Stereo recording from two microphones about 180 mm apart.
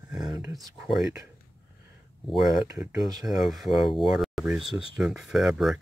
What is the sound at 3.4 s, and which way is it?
Speech, centre (ahead or behind).